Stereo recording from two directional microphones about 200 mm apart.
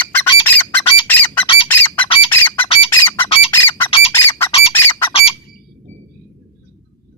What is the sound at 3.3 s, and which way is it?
Squawk, 25° left (ahead or behind).